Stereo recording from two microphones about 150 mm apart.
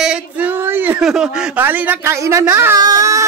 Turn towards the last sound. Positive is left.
turn(degrees=-20)  # may be behind; listen again after turning